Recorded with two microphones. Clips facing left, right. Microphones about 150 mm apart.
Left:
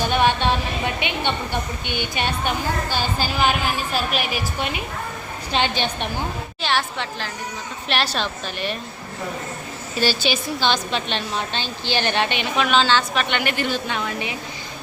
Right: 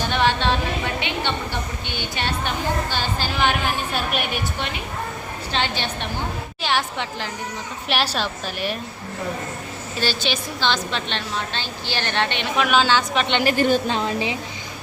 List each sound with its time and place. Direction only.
0.0 s a sound: 15° left (ahead or behind)
1.9 s a woman's voice: 15° left (ahead or behind)
3.9 s a woman's voice: centre (ahead or behind)
6.6 s a woman's voice: 15° right (ahead or behind)
10.0 s a woman's voice: 10° left (ahead or behind)
12.5 s a woman's voice: 10° right (ahead or behind)
13.4 s a woman's voice: 40° right (ahead or behind)
13.9 s a woman's voice: 30° right (ahead or behind)